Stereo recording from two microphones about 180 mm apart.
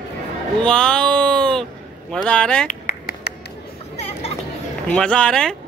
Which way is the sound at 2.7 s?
55° left (ahead or behind).